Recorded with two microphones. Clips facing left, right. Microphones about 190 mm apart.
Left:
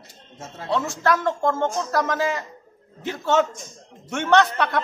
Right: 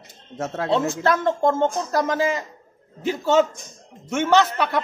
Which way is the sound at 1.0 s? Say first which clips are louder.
Right 2 dB; 25° right (ahead or behind).